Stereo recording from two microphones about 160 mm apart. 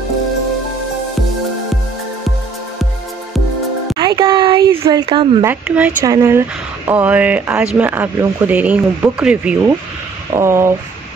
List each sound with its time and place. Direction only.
3.9 s a sound: 25° right (ahead or behind)
5.4 s speech: 10° right (ahead or behind)
6.0 s speech: 20° right (ahead or behind)
6.9 s speech: 10° right (ahead or behind)